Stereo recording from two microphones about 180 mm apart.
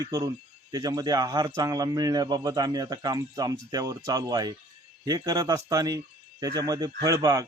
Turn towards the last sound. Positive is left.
turn(degrees=-20)  # may be behind; listen again after turning